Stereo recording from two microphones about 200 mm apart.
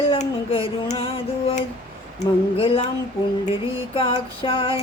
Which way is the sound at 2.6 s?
25° left (ahead or behind).